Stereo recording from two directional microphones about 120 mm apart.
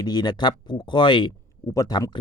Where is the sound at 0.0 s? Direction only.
35° left (ahead or behind).